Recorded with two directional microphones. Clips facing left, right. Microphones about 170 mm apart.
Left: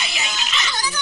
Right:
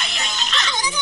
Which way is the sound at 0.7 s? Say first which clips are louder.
Right 1 dB; 20° right (ahead or behind).